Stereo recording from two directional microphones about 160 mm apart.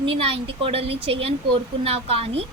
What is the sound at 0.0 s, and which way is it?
A woman's voice, 35° right (ahead or behind).